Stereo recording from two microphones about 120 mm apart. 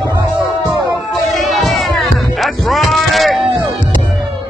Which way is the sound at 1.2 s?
Centre (ahead or behind).